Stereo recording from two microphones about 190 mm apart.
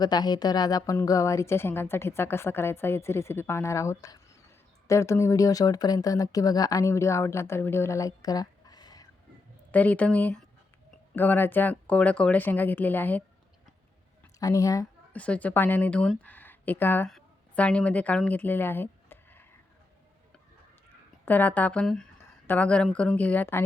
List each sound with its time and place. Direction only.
0.0 s a woman's voice: 20° left (ahead or behind)
9.7 s a woman's voice: 10° left (ahead or behind)
14.3 s a sound: 20° left (ahead or behind)
15.2 s a woman's voice: 5° left (ahead or behind)
21.2 s a woman's voice: 10° left (ahead or behind)